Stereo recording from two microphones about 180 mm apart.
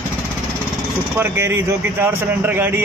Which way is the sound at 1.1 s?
15° right (ahead or behind).